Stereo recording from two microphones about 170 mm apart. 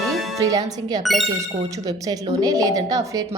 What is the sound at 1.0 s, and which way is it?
Speech, centre (ahead or behind).